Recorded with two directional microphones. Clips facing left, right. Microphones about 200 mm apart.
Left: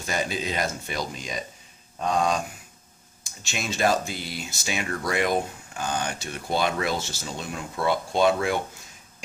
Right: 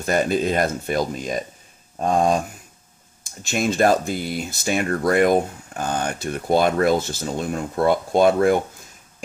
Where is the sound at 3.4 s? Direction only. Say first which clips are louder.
Right 7 dB; 50° right (ahead or behind).